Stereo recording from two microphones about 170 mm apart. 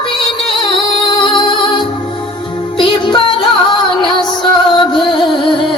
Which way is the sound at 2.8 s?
30° left (ahead or behind).